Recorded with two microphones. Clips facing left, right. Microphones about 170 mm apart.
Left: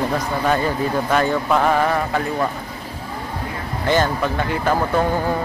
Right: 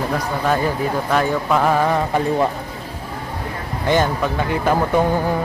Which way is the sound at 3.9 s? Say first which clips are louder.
Right 1 dB; 15° right (ahead or behind).